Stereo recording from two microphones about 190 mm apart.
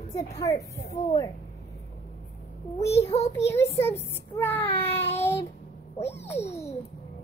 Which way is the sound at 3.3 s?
15° left (ahead or behind).